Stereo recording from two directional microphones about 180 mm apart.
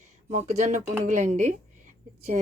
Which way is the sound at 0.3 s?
40° right (ahead or behind).